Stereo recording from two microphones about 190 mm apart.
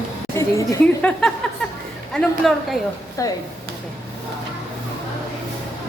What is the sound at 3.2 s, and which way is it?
Speech, 15° left (ahead or behind).